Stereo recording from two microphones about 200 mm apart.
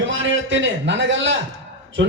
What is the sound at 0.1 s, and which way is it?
A man's voice, 70° right (ahead or behind).